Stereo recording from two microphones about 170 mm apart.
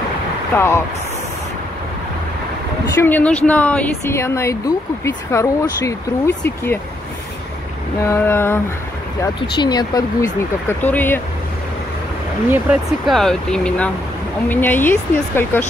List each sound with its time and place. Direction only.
0.6 s speech: 15° left (ahead or behind)
2.9 s speech: 15° left (ahead or behind)
8.1 s speech: 15° left (ahead or behind)
9.2 s speech: 25° left (ahead or behind)
10.8 s speech: 10° left (ahead or behind)
12.4 s speech: 5° right (ahead or behind); by 15.6 s 10° left (ahead or behind)